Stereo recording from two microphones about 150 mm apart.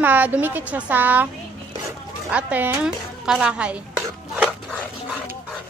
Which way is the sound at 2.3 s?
10° right (ahead or behind).